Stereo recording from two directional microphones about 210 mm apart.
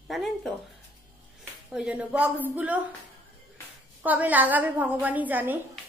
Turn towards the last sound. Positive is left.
turn(degrees=-10)  # may be behind; listen again after turning